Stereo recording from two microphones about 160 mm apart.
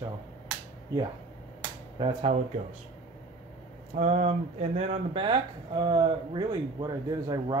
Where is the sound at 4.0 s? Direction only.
45° right (ahead or behind).